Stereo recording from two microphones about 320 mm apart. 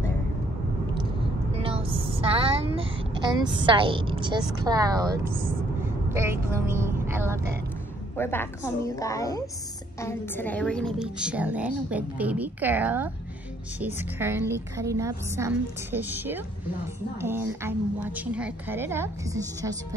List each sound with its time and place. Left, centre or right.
1.6 s a sound: centre
6.0 s a woman's voice: centre
8.2 s a woman's voice: centre